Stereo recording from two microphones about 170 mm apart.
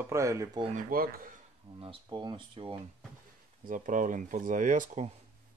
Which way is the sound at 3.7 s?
50° right (ahead or behind).